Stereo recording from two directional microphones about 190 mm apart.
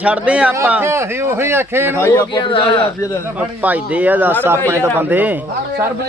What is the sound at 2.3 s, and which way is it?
Speech, 25° left (ahead or behind).